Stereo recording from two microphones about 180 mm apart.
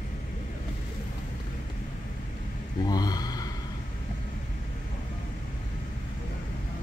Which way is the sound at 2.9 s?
20° left (ahead or behind).